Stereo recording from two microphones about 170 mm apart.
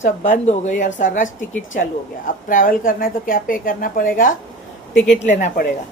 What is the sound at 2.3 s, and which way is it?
A woman's voice, 55° left (ahead or behind).